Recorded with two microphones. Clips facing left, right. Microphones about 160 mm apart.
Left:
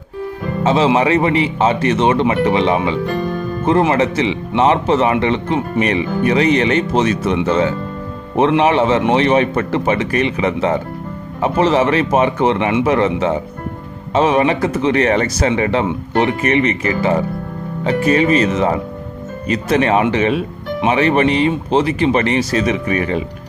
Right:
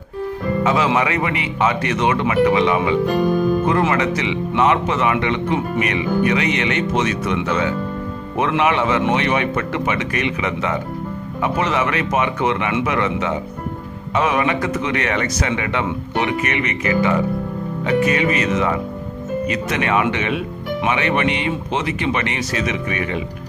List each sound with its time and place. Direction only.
0.6 s speech: 30° left (ahead or behind)
3.1 s speech: 10° right (ahead or behind)
3.7 s speech: 30° left (ahead or behind)